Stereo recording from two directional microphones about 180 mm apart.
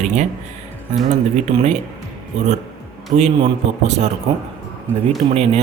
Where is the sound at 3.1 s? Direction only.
35° right (ahead or behind).